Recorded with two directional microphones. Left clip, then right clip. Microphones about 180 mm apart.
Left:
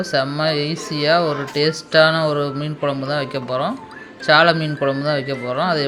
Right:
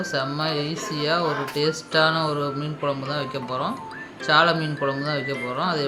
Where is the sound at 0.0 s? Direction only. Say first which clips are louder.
Left 6 dB; 25° left (ahead or behind).